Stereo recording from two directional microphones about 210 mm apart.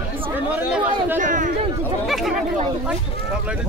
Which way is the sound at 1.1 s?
40° right (ahead or behind).